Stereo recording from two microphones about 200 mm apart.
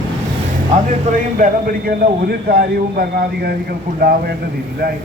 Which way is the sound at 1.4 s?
45° right (ahead or behind).